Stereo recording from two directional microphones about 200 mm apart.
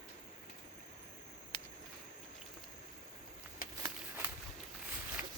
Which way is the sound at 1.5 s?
25° left (ahead or behind).